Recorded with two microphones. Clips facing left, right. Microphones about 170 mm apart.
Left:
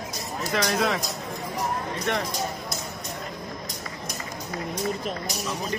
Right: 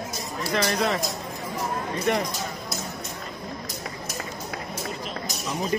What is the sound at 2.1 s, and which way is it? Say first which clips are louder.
Speech: right 4 dB; 5° right (ahead or behind).